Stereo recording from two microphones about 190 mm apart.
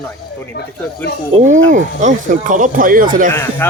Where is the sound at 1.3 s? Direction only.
40° right (ahead or behind).